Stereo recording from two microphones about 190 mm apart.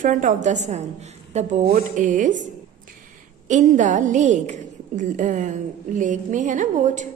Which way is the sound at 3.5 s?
40° right (ahead or behind).